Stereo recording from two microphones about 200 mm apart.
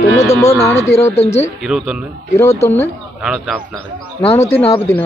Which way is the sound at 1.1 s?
30° left (ahead or behind).